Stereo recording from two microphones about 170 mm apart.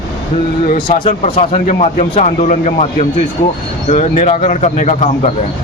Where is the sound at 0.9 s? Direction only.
30° left (ahead or behind).